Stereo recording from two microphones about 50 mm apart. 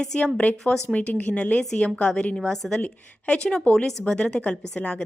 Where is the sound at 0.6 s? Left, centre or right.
Centre.